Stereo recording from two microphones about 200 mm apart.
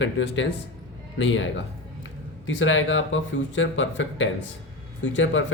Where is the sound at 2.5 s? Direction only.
70° left (ahead or behind).